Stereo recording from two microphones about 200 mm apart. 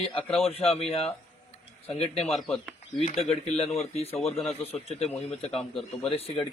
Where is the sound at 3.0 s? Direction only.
30° left (ahead or behind).